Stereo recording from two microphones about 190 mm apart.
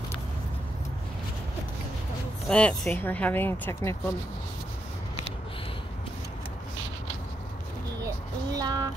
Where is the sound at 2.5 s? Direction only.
5° left (ahead or behind).